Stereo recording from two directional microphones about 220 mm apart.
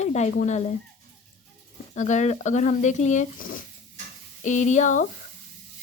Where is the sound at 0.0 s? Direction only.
30° left (ahead or behind).